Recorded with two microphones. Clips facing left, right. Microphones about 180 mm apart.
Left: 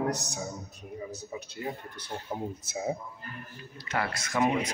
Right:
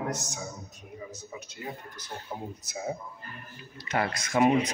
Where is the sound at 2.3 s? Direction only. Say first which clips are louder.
Left 3 dB; 15° left (ahead or behind).